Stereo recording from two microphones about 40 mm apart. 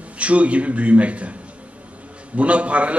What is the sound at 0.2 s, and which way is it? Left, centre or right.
A man's voice, right.